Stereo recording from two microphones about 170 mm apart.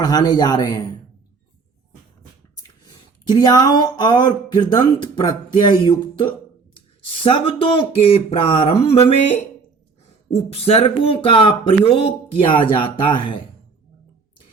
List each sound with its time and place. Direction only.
0.0 s speech: 25° left (ahead or behind)
2.8 s speech: 25° left (ahead or behind)
10.3 s speech: 35° left (ahead or behind)